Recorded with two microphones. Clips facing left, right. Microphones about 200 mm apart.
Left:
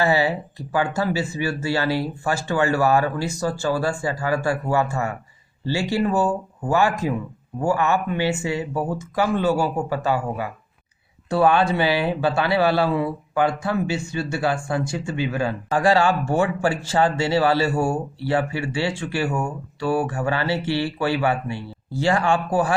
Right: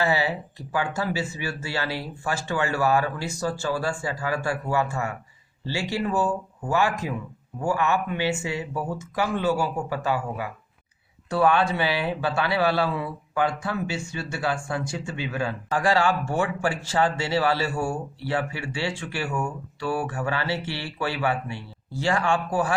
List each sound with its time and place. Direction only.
0.0 s speech: 35° left (ahead or behind)